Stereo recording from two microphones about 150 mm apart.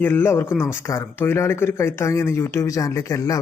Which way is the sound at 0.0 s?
15° left (ahead or behind).